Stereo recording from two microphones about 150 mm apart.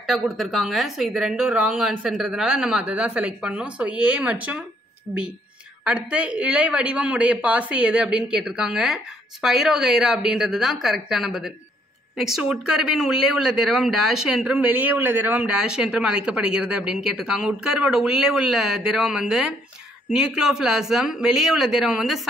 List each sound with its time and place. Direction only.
0.0 s speech: centre (ahead or behind)